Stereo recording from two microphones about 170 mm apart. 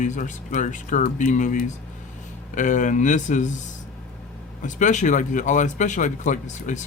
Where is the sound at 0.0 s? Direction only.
45° left (ahead or behind).